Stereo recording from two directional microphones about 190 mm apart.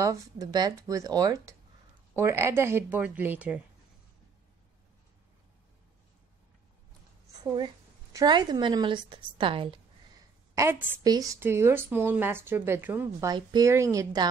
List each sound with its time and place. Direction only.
0.0 s a woman's voice: 20° right (ahead or behind)
7.4 s a woman's voice: 20° right (ahead or behind)